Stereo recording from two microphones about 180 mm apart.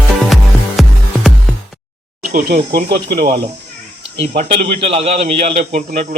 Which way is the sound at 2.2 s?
55° right (ahead or behind).